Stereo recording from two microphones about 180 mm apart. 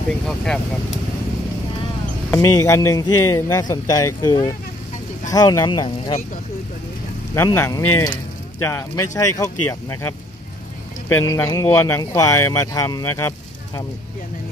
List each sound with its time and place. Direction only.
2.3 s a man's voice: 15° left (ahead or behind)
7.3 s a man's voice: 15° left (ahead or behind)
11.2 s a man's voice: 15° left (ahead or behind)